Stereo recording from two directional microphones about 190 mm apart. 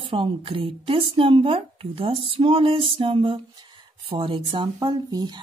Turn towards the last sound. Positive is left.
turn(degrees=-20)  # may be behind; listen again after turning